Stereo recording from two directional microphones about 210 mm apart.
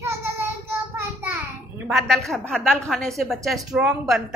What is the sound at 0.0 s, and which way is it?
Child singing, 15° right (ahead or behind).